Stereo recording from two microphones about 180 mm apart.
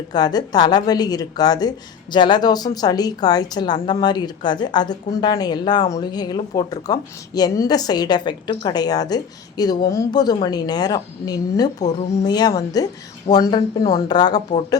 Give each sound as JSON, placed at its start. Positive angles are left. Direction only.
{"t": 0.1, "sound": "a woman's voice", "side_deg": 20}